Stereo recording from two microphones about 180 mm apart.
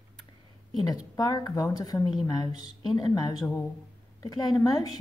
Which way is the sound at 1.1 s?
20° left (ahead or behind).